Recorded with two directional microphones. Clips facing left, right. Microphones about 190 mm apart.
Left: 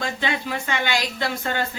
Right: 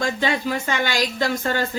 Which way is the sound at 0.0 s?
40° right (ahead or behind).